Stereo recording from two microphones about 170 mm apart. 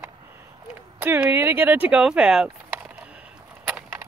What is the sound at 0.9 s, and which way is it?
Speech, 10° right (ahead or behind).